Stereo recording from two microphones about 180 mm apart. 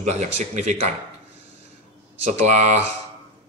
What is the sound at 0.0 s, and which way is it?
Speech, 40° right (ahead or behind).